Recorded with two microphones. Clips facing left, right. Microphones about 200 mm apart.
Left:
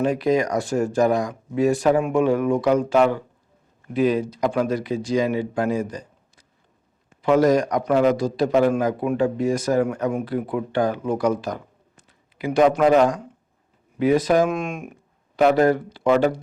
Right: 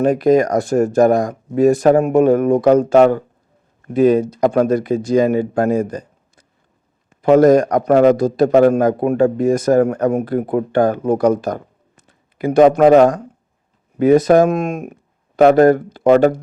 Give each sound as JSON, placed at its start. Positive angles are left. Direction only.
{"t": 0.0, "sound": "a man's voice", "side_deg": -50}
{"t": 7.2, "sound": "a man's voice", "side_deg": -50}